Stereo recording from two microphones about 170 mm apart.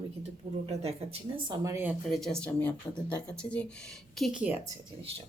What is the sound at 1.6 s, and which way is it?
Speech, 15° right (ahead or behind).